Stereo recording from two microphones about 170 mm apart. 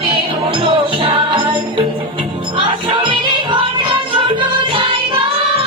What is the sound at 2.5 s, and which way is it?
Music, 30° right (ahead or behind).